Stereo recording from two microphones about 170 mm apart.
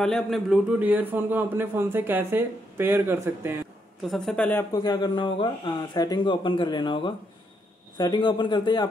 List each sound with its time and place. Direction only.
0.0 s a man's voice: centre (ahead or behind); by 3.5 s 15° right (ahead or behind)
4.1 s a woman's voice: 5° left (ahead or behind)
4.7 s speech: 25° left (ahead or behind)